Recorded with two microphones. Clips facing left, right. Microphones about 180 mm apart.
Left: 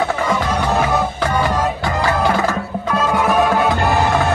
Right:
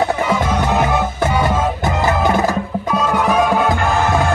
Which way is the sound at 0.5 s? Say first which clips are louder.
Right 1 dB; 5° right (ahead or behind).